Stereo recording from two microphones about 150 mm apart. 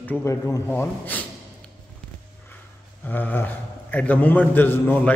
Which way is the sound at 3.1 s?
10° left (ahead or behind).